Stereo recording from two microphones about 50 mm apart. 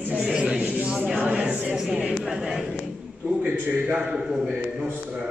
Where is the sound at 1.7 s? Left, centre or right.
Centre.